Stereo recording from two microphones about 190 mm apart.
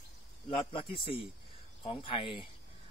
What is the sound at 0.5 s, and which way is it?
A man's voice, 25° left (ahead or behind).